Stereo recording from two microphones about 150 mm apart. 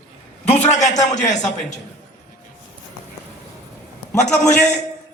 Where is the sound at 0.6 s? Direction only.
50° left (ahead or behind).